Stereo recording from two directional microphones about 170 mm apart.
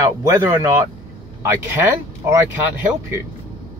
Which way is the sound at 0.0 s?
20° right (ahead or behind).